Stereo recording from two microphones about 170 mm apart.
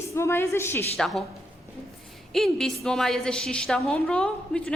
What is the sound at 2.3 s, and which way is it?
A woman's voice, centre (ahead or behind).